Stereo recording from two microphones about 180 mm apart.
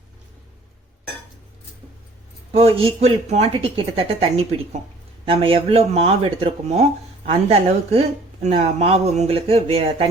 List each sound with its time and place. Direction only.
2.5 s speech: 35° right (ahead or behind)